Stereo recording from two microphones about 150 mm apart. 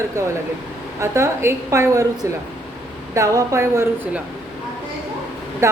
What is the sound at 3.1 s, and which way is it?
Speech, 20° right (ahead or behind).